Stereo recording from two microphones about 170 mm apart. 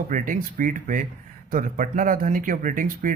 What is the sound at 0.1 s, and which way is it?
Speech, 50° right (ahead or behind).